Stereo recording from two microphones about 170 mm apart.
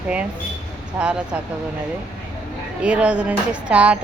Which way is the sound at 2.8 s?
5° right (ahead or behind).